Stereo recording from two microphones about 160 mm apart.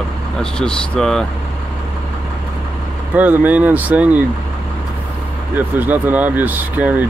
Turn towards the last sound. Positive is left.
turn(degrees=-10)  # may be behind; listen again after turning